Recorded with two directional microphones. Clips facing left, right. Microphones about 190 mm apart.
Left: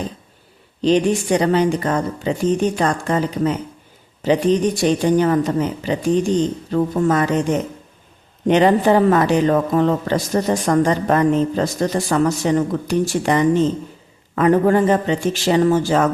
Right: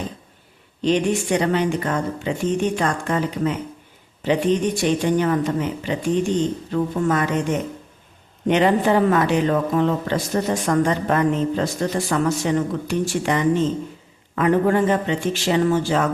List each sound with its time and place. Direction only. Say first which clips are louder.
0.8 s speech: left 3 dB; 35° left (ahead or behind)
8.4 s speech: left 3 dB; 35° left (ahead or behind)